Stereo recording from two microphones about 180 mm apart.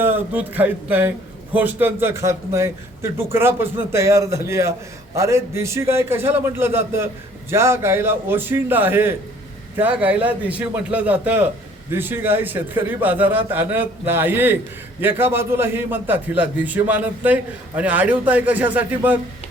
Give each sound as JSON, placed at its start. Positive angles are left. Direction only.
{"t": 0.0, "sound": "a man's voice", "side_deg": -10}